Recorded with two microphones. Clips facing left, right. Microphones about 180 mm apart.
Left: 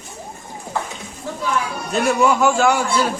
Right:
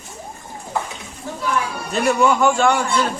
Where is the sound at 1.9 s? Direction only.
Centre (ahead or behind).